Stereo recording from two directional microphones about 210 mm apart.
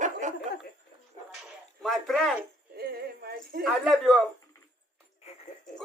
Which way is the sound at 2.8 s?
50° right (ahead or behind).